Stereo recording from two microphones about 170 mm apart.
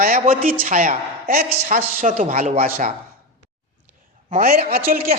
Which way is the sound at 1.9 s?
50° right (ahead or behind).